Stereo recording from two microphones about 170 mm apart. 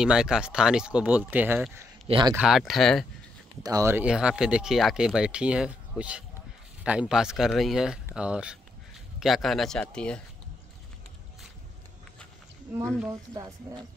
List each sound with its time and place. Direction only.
0.0 s speech: 5° right (ahead or behind)
2.0 s speech: 30° right (ahead or behind)
2.3 s speech: 5° right (ahead or behind)
3.6 s speech: 20° right (ahead or behind); by 10.2 s 5° left (ahead or behind)
13.3 s speech: 25° right (ahead or behind)